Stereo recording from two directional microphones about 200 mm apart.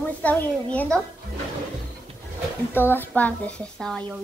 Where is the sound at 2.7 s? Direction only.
10° left (ahead or behind).